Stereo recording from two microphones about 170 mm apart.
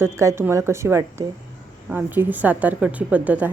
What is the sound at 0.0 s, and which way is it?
A woman's voice, 15° right (ahead or behind).